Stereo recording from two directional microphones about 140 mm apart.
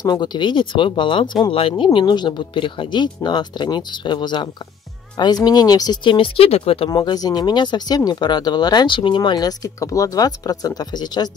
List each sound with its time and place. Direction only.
0.0 s speech: 30° left (ahead or behind)
6.9 s speech: 30° left (ahead or behind)